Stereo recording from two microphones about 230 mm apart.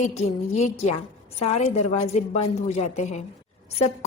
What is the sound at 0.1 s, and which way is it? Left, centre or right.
A woman's voice, left.